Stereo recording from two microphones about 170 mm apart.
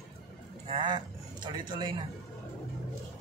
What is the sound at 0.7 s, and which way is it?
A man's voice, 25° right (ahead or behind).